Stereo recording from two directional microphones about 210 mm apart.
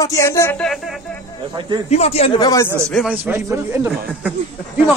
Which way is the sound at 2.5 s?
15° left (ahead or behind).